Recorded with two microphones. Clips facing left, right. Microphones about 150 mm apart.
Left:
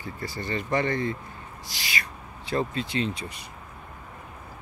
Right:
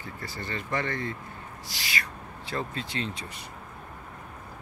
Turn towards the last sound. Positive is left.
turn(degrees=15)  # may be behind; listen again after turning